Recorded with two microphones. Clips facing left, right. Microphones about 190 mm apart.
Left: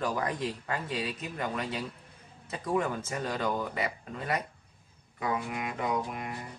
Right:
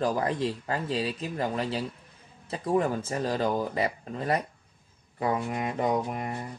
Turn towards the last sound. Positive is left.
turn(degrees=-35)  # may be behind; listen again after turning